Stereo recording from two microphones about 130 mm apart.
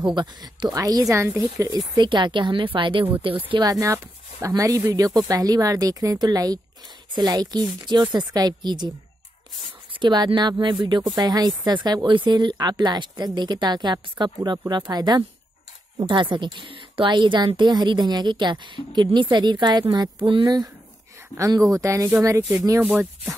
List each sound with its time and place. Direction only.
0.1 s speech: 35° right (ahead or behind)
2.0 s speech: 35° right (ahead or behind)
3.6 s speech: 25° right (ahead or behind)
9.9 s speech: 35° right (ahead or behind); by 23.3 s 10° right (ahead or behind)